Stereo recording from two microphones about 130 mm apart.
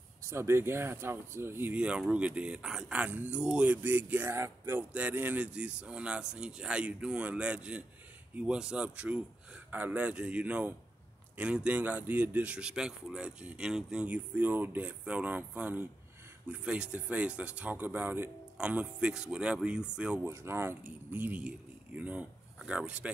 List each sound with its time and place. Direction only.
0.2 s speech: 20° right (ahead or behind)